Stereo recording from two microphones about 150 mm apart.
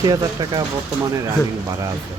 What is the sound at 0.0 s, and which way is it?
Speech, 25° right (ahead or behind).